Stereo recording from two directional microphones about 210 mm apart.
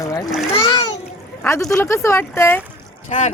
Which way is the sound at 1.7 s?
10° left (ahead or behind).